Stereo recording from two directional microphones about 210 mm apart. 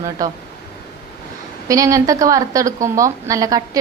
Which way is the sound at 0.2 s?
15° right (ahead or behind).